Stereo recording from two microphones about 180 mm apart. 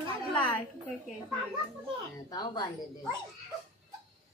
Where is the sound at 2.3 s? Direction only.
20° left (ahead or behind).